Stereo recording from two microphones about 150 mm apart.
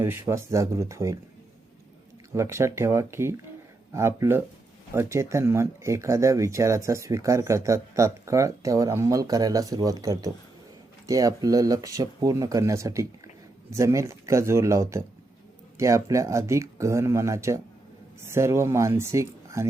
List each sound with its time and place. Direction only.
0.0 s speech: 15° right (ahead or behind)
2.3 s speech: 20° right (ahead or behind)